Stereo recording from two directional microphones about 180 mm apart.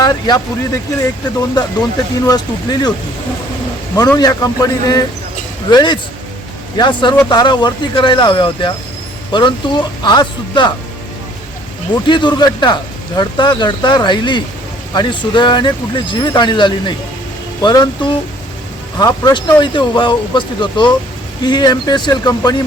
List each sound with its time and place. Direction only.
0.0 s a man's voice: 20° left (ahead or behind)
2.2 s a man's voice: 20° left (ahead or behind)
3.9 s a man's voice: 20° left (ahead or behind)
12.0 s a man's voice: 25° left (ahead or behind)